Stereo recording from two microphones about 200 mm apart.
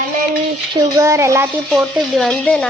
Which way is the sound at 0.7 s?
15° right (ahead or behind).